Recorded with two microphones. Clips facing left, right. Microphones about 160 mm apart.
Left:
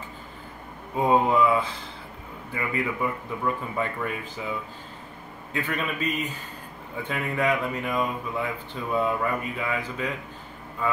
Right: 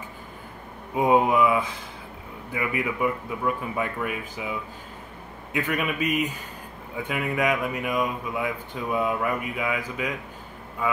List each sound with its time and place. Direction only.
0.9 s speech: 15° right (ahead or behind)